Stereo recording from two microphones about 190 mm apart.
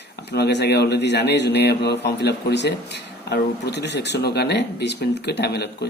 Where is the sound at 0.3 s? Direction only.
60° left (ahead or behind).